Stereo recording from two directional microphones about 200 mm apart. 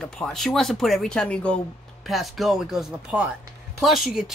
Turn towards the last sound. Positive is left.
turn(degrees=0)  # may be behind; listen again after turning